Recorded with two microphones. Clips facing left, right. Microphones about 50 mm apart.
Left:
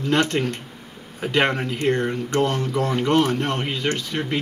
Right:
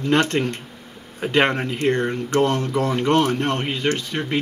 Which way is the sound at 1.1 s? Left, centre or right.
Centre.